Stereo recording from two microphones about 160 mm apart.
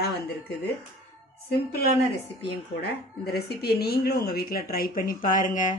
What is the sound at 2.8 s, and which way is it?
Speech, 90° left.